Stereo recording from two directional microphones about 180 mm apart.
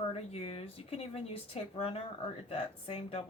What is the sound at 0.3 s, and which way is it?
Speech, 35° left (ahead or behind).